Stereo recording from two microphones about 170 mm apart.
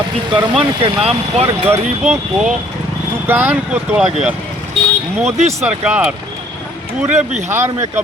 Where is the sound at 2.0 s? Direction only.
10° right (ahead or behind).